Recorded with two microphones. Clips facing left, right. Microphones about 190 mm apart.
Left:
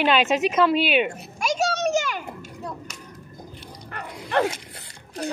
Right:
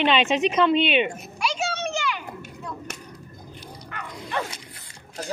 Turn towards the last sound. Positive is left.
turn(degrees=65)  # may be behind; listen again after turning